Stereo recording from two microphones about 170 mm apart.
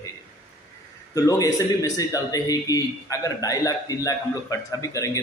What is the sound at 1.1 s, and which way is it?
A man's voice, 20° left (ahead or behind).